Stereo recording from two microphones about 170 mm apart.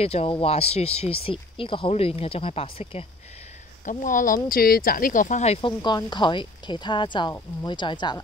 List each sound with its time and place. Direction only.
0.0 s speech: 35° left (ahead or behind)
3.8 s speech: 50° left (ahead or behind); by 8.2 s 25° left (ahead or behind)